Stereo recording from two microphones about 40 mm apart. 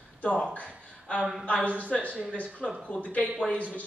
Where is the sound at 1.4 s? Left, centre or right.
Left.